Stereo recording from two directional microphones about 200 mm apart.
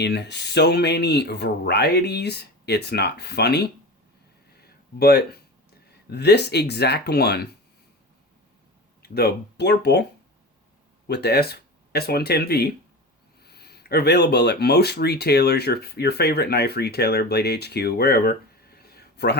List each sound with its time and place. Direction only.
0.0 s speech: 55° left (ahead or behind)
4.9 s speech: 50° left (ahead or behind)
9.0 s speech: 50° left (ahead or behind)
11.1 s speech: 55° left (ahead or behind)